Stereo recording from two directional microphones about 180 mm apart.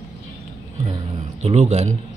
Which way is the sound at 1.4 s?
35° right (ahead or behind).